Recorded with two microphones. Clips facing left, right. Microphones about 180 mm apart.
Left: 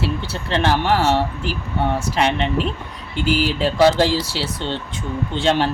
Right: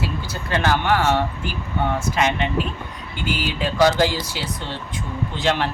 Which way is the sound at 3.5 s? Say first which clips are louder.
Left 1 dB; 30° left (ahead or behind).